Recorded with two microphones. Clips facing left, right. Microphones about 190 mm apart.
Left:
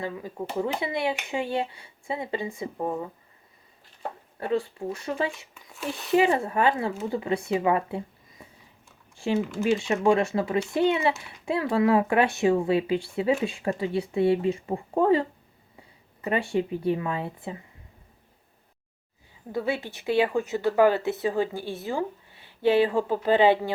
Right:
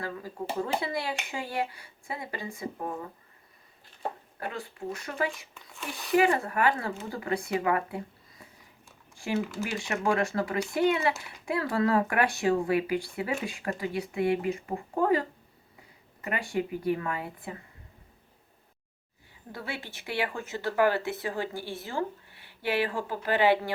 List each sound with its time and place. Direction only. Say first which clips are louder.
0.0 s speech: left 3 dB; 20° left (ahead or behind)
4.4 s speech: left 9 dB; 30° left (ahead or behind)
19.6 s speech: left 9 dB; 20° left (ahead or behind)